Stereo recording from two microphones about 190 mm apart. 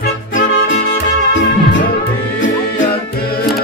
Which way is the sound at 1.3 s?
75° left (ahead or behind).